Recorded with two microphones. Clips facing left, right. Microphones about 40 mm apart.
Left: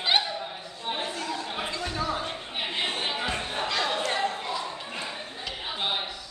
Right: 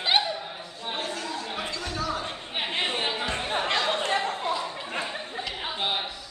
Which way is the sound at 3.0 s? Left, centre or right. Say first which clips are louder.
Right 1 dB; centre.